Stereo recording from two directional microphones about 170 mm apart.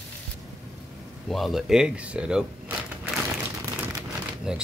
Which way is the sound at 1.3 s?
Centre (ahead or behind).